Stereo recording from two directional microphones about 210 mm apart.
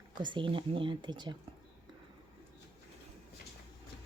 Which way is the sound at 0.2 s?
20° right (ahead or behind).